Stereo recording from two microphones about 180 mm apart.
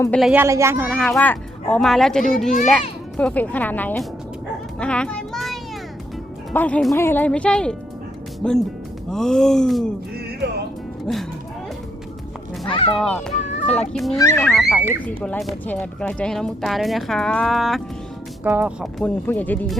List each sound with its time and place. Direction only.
0.1 s speech: centre (ahead or behind)
0.3 s a child's voice: 15° right (ahead or behind)
0.9 s speech: 5° right (ahead or behind)
1.1 s speech: 10° left (ahead or behind)
4.8 s child singing: 5° left (ahead or behind)
6.5 s speech: 10° left (ahead or behind)
11.1 s speech: 5° left (ahead or behind)
12.6 s speech: 30° left (ahead or behind)
12.9 s speech: 5° left (ahead or behind)
14.2 s speech: 15° left (ahead or behind)
14.4 s speech: centre (ahead or behind)
19.2 s speech: 10° left (ahead or behind)